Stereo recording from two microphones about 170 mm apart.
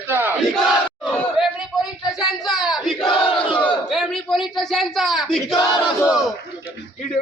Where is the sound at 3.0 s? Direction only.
30° left (ahead or behind).